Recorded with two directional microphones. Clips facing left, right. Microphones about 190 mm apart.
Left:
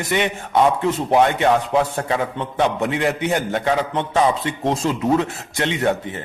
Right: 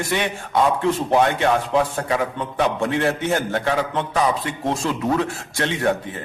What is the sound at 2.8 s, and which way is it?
A man's voice, 20° left (ahead or behind).